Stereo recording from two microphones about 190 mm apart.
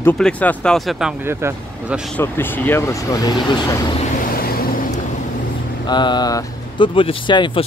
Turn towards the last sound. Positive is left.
turn(degrees=25)  # may be behind; listen again after turning